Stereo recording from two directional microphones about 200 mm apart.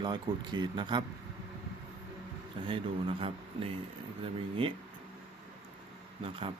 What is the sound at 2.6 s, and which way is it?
A man's voice, 25° right (ahead or behind).